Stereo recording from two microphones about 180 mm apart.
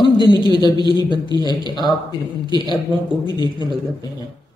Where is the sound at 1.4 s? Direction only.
25° left (ahead or behind).